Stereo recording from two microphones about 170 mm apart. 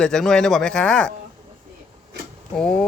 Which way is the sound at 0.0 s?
5° left (ahead or behind).